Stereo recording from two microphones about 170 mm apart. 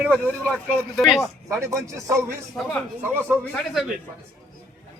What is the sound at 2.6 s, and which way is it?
Speech, 10° left (ahead or behind).